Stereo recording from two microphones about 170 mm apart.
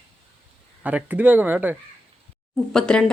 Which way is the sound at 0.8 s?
10° right (ahead or behind).